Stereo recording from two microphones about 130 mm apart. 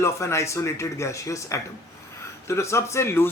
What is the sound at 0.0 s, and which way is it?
Speech, 20° left (ahead or behind).